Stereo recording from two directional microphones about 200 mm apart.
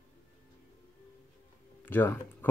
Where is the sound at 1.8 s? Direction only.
10° left (ahead or behind).